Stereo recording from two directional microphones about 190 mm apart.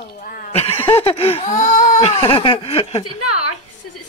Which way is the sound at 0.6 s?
30° left (ahead or behind).